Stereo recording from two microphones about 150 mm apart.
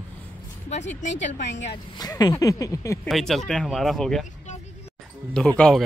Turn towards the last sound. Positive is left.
turn(degrees=5)  # may be behind; listen again after turning